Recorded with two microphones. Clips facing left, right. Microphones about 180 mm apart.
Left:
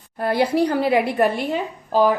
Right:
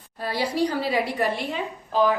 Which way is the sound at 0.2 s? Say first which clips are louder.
Left 6 dB; 55° left (ahead or behind).